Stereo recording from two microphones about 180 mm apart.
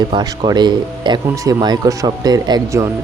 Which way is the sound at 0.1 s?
20° right (ahead or behind).